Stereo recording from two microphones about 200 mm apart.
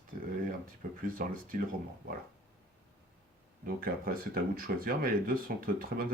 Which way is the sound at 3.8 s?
45° right (ahead or behind).